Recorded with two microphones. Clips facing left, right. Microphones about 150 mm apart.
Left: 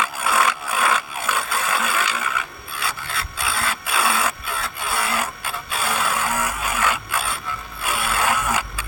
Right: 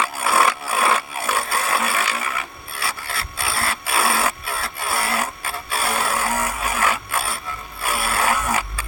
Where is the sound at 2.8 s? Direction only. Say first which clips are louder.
Even; 30° right (ahead or behind).